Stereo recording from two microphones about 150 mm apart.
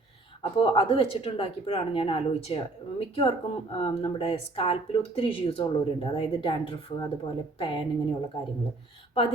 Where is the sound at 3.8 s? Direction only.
35° left (ahead or behind).